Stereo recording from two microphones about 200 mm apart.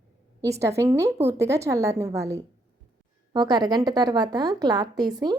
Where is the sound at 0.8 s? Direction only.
15° right (ahead or behind).